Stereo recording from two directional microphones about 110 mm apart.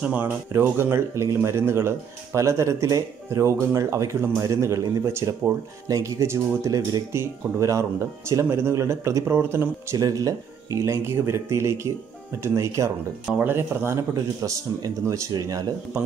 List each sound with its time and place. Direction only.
0.0 s speech: 15° right (ahead or behind)
14.1 s speech: 30° right (ahead or behind)